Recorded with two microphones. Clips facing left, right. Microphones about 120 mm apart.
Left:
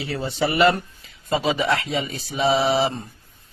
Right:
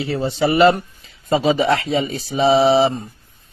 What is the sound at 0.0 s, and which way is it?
A man's voice, 30° right (ahead or behind).